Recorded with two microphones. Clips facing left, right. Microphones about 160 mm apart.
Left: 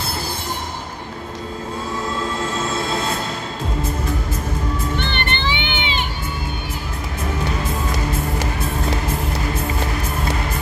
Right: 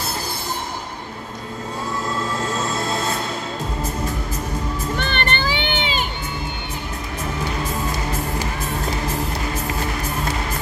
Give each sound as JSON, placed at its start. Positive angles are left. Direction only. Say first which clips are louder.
{"t": 4.9, "sound": "music", "louder": "right 1 dB", "side_deg": -45}